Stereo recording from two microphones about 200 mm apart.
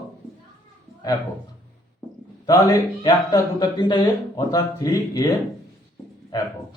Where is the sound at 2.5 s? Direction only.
15° left (ahead or behind).